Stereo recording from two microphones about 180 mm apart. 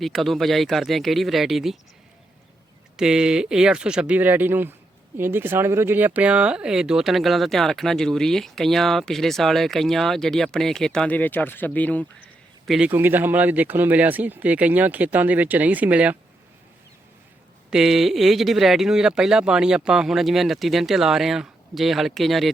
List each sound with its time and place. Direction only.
0.0 s speech: centre (ahead or behind)
2.9 s speech: 5° right (ahead or behind)
12.9 s speech: 10° right (ahead or behind)
17.7 s speech: centre (ahead or behind)